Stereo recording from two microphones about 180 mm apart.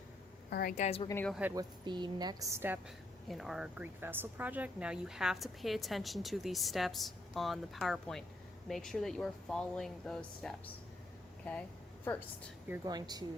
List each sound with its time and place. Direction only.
0.5 s a woman's voice: 55° left (ahead or behind)
1.0 s speech: 15° left (ahead or behind)
1.3 s speech: 10° right (ahead or behind)
1.5 s a woman's voice: 25° right (ahead or behind)
3.2 s speech: centre (ahead or behind)
12.8 s a woman's voice: 20° right (ahead or behind)